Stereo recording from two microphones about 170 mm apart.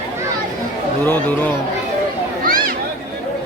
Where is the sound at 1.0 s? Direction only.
10° left (ahead or behind).